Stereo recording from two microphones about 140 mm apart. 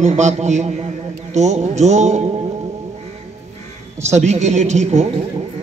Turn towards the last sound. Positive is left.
turn(degrees=-55)  # may be behind; listen again after turning